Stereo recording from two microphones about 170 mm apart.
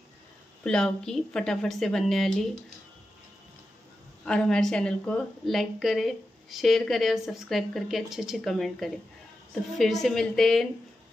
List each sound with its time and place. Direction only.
0.7 s a woman's voice: 5° left (ahead or behind)
4.2 s a woman's voice: 5° left (ahead or behind)